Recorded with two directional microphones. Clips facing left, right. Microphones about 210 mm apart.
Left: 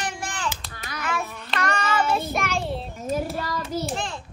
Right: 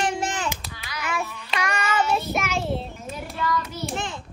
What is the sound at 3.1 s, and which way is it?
Child singing, 40° left (ahead or behind).